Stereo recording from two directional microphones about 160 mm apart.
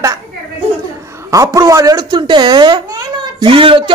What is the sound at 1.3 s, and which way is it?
Speech, 20° right (ahead or behind).